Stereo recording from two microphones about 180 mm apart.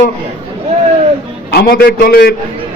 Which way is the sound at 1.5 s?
60° left (ahead or behind).